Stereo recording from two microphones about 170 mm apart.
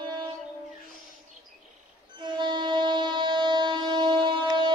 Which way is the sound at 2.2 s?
30° right (ahead or behind).